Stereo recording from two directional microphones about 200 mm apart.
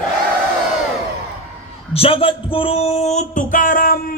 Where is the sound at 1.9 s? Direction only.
30° left (ahead or behind); by 4.0 s 45° left (ahead or behind).